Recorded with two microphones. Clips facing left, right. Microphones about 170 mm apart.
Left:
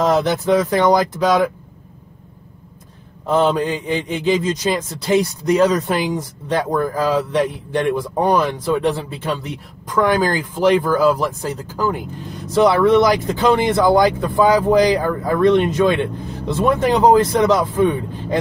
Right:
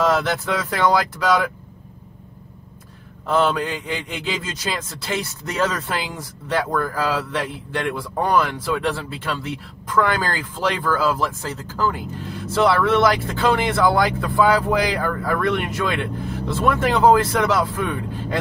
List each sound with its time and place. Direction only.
0.0 s a man's voice: 20° left (ahead or behind)
3.3 s a man's voice: 20° left (ahead or behind)